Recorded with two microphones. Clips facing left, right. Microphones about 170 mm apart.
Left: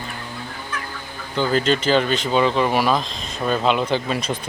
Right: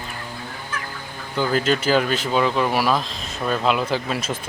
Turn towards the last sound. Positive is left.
turn(degrees=-5)  # may be behind; listen again after turning